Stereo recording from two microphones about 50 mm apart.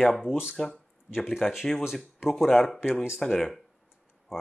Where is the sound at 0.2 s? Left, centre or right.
Centre.